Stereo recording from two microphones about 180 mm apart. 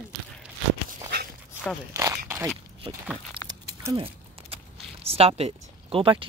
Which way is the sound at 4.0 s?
30° right (ahead or behind).